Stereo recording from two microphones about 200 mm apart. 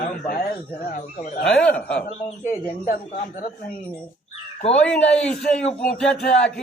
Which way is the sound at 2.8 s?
40° left (ahead or behind).